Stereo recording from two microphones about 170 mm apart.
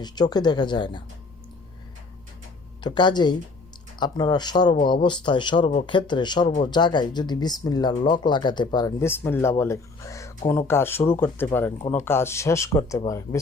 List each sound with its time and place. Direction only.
0.0 s speech: 25° left (ahead or behind)
2.8 s speech: 25° left (ahead or behind)